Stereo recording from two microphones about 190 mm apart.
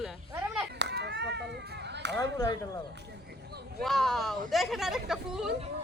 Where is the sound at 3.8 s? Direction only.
Centre (ahead or behind).